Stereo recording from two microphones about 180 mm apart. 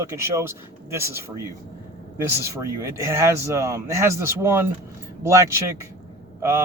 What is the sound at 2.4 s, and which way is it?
Speech, 15° right (ahead or behind).